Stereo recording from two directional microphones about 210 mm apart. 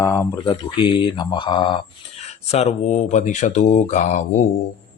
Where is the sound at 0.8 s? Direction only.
25° left (ahead or behind).